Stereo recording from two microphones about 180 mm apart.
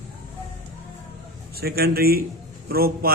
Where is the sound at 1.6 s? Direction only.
60° right (ahead or behind).